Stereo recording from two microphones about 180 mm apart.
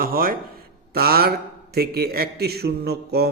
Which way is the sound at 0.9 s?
60° right (ahead or behind).